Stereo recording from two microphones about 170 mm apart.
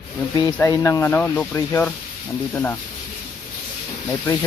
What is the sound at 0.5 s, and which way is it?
Speech, 15° left (ahead or behind).